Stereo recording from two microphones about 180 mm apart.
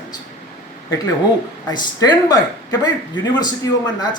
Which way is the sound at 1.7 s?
25° left (ahead or behind).